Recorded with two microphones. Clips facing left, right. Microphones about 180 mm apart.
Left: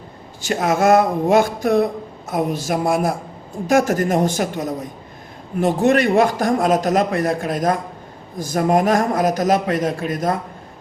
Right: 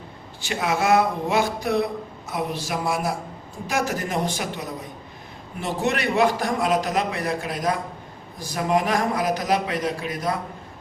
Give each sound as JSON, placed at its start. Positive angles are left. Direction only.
{"t": 0.4, "sound": "speech", "side_deg": 45}